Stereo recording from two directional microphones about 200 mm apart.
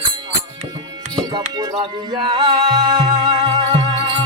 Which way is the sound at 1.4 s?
30° right (ahead or behind).